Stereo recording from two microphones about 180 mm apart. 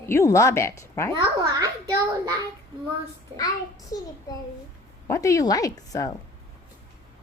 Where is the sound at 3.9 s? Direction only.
50° left (ahead or behind).